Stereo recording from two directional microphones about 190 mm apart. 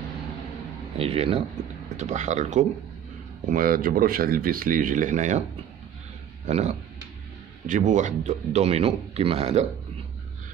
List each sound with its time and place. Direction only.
0.9 s speech: 30° right (ahead or behind)
3.5 s speech: 50° right (ahead or behind)
6.4 s speech: 40° right (ahead or behind)